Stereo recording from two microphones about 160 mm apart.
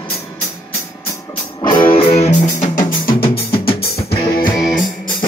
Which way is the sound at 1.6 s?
30° left (ahead or behind).